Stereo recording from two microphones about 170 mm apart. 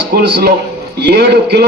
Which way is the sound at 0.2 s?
70° right (ahead or behind).